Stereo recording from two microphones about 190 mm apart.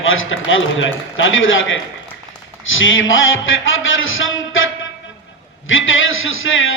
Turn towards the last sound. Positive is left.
turn(degrees=90)